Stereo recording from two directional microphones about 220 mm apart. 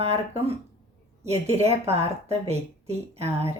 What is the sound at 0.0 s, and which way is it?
Speech, 25° right (ahead or behind).